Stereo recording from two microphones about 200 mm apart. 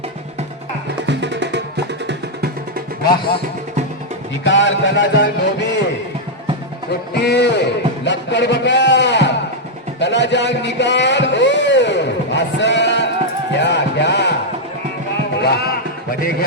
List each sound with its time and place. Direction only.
1.0 s music: 60° right (ahead or behind)
4.4 s music: 65° left (ahead or behind)
7.1 s music: 55° left (ahead or behind)
10.0 s a sound: 60° left (ahead or behind)
13.6 s music: 60° left (ahead or behind)
15.4 s music: 55° left (ahead or behind)